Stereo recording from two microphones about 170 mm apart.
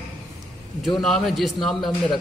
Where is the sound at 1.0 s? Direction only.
Centre (ahead or behind).